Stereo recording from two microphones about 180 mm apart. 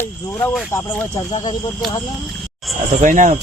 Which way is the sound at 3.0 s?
45° right (ahead or behind).